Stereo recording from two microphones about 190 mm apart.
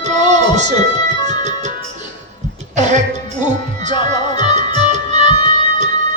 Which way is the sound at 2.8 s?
40° right (ahead or behind).